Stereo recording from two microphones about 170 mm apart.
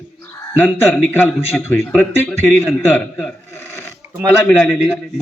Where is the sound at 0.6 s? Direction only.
10° left (ahead or behind).